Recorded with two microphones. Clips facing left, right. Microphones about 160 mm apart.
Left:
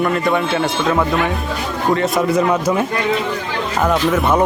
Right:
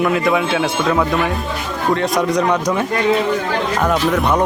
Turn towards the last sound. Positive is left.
turn(degrees=0)  # may be behind; listen again after turning